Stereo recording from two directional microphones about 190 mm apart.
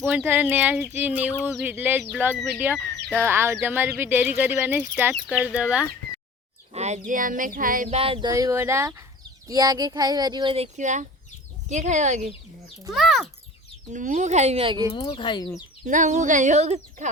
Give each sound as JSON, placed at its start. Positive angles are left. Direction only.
{"t": 0.0, "sound": "speech", "side_deg": -5}
{"t": 6.7, "sound": "a sound", "side_deg": -35}
{"t": 7.9, "sound": "speech", "side_deg": -30}
{"t": 8.3, "sound": "speech", "side_deg": -15}
{"t": 12.9, "sound": "speech", "side_deg": 0}
{"t": 13.9, "sound": "speech", "side_deg": -40}
{"t": 14.9, "sound": "speech", "side_deg": 30}
{"t": 15.9, "sound": "speech", "side_deg": -40}